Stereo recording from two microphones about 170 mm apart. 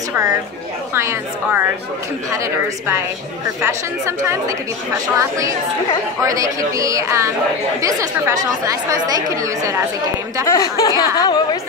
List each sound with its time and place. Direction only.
0.1 s a woman's voice: 20° right (ahead or behind)
6.2 s speech: 20° right (ahead or behind)
10.4 s speech: 20° left (ahead or behind)